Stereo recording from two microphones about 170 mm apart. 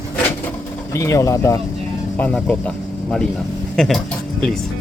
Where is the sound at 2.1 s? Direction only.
10° left (ahead or behind).